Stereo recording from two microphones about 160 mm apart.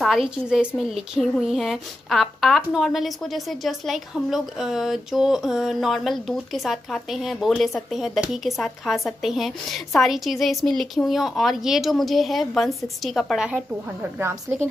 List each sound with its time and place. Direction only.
0.0 s a woman's voice: centre (ahead or behind)
14.1 s a woman's voice: 15° right (ahead or behind)